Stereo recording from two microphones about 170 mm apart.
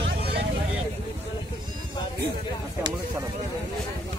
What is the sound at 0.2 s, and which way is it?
Vehicle, 70° right (ahead or behind).